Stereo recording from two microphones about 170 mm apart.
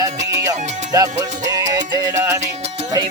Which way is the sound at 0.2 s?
90° right.